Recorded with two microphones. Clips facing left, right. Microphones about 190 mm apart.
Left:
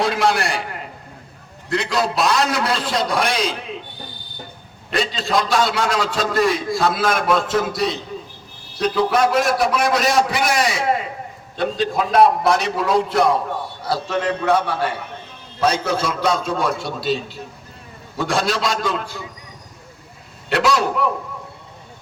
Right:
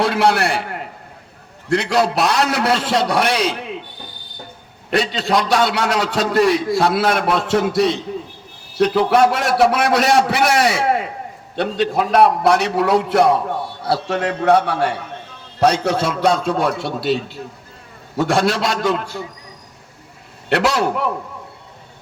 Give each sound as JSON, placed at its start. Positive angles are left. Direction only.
{"t": 0.0, "sound": "a man's voice", "side_deg": -65}
{"t": 4.9, "sound": "a man's voice", "side_deg": -65}
{"t": 18.2, "sound": "a man's voice", "side_deg": -65}
{"t": 20.5, "sound": "a man's voice", "side_deg": -60}